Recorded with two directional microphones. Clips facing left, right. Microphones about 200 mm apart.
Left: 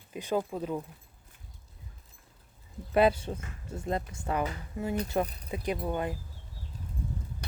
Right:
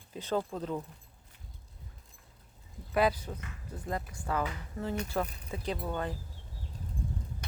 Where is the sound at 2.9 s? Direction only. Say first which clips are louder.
Left 4 dB; 25° left (ahead or behind).